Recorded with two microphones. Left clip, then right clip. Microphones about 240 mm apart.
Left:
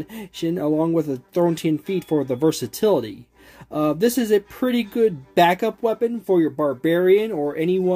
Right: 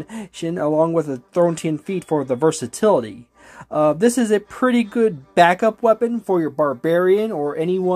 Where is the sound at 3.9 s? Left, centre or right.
Centre.